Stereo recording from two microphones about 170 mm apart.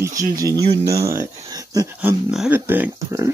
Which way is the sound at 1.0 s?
20° right (ahead or behind).